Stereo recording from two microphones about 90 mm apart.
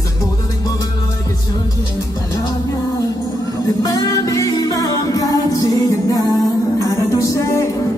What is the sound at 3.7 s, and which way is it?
Music, 40° left (ahead or behind).